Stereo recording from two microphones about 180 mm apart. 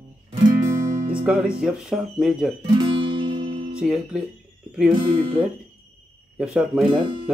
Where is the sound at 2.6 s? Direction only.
30° right (ahead or behind).